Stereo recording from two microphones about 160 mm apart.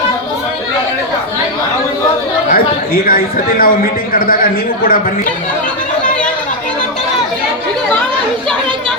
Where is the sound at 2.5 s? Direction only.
65° left (ahead or behind).